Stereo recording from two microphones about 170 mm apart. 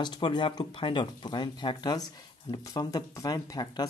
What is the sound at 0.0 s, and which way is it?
Speech, 25° left (ahead or behind).